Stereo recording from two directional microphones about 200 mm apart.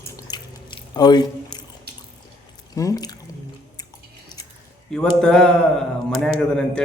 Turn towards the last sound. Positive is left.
turn(degrees=5)  # may be behind; listen again after turning